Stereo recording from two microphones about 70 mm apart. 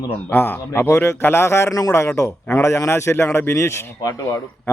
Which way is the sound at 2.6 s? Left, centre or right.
Left.